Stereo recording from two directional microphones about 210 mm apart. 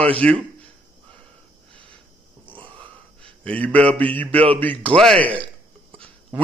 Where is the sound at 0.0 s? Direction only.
5° left (ahead or behind).